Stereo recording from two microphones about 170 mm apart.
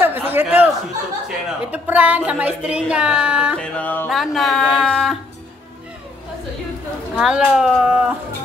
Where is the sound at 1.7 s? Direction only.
10° right (ahead or behind).